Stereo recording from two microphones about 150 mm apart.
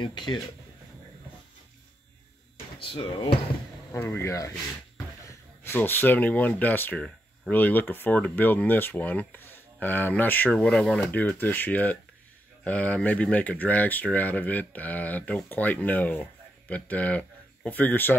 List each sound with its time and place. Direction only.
0.0 s speech: 30° left (ahead or behind)
2.8 s speech: 35° left (ahead or behind)
3.9 s speech: 15° left (ahead or behind)